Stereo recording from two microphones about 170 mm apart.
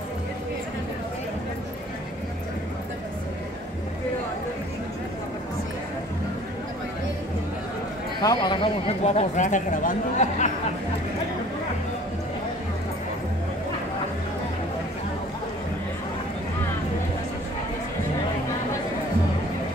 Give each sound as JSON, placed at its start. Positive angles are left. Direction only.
{"t": 8.2, "sound": "speech", "side_deg": 25}